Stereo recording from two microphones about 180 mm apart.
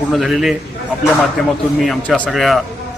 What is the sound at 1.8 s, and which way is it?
Speech, centre (ahead or behind).